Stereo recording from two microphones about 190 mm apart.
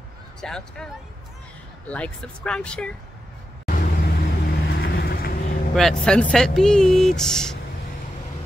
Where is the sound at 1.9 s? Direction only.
5° left (ahead or behind).